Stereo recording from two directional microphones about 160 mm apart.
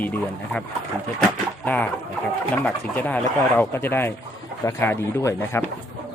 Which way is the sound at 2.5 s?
10° left (ahead or behind).